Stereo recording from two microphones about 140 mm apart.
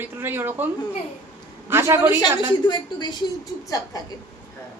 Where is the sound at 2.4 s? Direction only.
30° left (ahead or behind).